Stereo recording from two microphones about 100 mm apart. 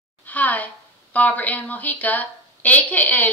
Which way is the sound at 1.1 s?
15° left (ahead or behind).